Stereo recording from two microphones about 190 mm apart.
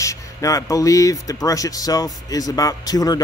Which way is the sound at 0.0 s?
15° left (ahead or behind).